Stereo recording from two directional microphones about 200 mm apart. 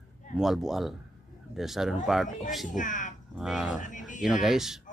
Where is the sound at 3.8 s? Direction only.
40° left (ahead or behind).